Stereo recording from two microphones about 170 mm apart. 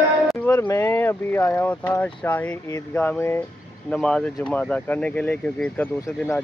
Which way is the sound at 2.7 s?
10° left (ahead or behind).